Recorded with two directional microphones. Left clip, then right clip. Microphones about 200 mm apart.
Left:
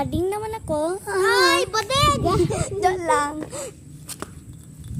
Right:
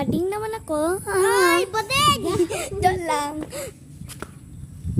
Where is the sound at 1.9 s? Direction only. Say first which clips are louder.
Right 1 dB; 50° right (ahead or behind).